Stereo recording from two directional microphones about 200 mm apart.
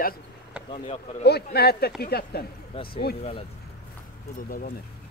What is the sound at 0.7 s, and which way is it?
Speech, 30° left (ahead or behind).